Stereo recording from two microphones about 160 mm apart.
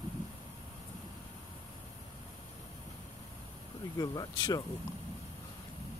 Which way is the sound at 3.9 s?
25° left (ahead or behind).